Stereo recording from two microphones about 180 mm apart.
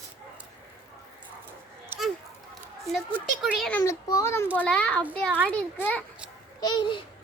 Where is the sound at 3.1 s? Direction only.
10° right (ahead or behind).